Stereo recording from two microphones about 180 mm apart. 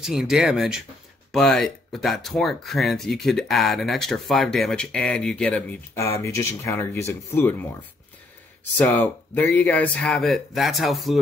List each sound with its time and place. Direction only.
0.0 s speech: centre (ahead or behind)
8.7 s speech: 10° left (ahead or behind)